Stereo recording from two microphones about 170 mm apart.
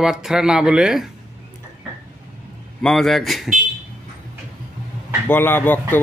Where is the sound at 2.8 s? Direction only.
Centre (ahead or behind).